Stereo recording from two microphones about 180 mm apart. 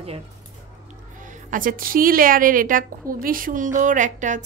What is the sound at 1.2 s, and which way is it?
A woman's voice, 45° right (ahead or behind).